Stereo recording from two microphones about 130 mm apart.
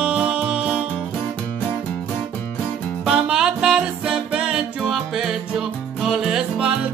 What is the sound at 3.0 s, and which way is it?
Music, 5° right (ahead or behind).